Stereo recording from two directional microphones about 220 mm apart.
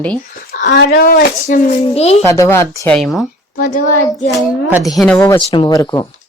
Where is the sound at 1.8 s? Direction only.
30° left (ahead or behind).